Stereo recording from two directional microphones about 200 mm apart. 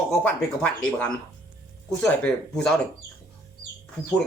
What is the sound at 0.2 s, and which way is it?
Speech, 5° left (ahead or behind).